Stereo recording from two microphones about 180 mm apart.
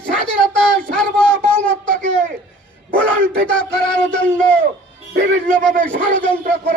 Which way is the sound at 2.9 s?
5° left (ahead or behind).